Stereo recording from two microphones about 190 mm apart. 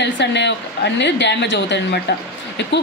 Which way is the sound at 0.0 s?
65° left (ahead or behind).